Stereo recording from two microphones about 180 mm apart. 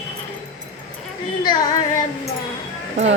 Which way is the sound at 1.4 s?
20° left (ahead or behind).